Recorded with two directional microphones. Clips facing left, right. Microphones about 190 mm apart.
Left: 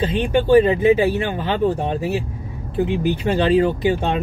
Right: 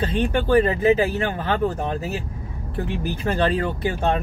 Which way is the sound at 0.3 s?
20° left (ahead or behind).